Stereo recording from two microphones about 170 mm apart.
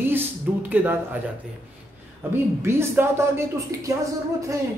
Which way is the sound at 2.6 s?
15° right (ahead or behind).